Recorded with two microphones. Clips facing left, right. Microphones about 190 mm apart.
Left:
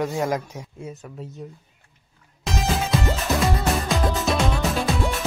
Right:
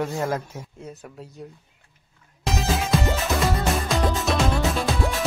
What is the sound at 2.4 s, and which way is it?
Music, centre (ahead or behind).